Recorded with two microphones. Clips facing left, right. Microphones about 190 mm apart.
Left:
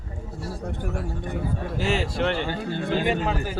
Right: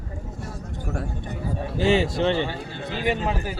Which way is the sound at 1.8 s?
25° right (ahead or behind).